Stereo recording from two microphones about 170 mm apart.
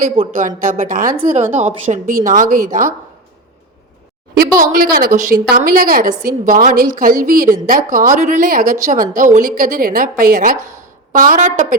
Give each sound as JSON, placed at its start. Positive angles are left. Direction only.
{"t": 0.3, "sound": "a woman's voice", "side_deg": -50}
{"t": 4.4, "sound": "a woman's voice", "side_deg": -55}